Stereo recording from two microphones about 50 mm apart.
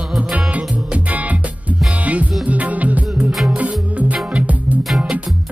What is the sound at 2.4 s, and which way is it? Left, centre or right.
Music, right.